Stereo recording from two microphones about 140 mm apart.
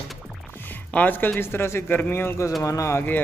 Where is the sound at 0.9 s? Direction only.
10° left (ahead or behind).